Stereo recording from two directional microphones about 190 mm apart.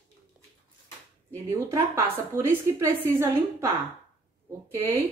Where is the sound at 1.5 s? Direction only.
15° right (ahead or behind).